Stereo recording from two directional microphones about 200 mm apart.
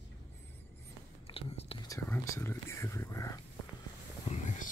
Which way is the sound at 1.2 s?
30° left (ahead or behind).